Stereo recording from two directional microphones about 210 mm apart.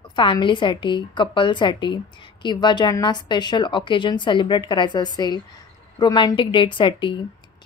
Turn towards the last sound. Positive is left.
turn(degrees=25)  # may be behind; listen again after turning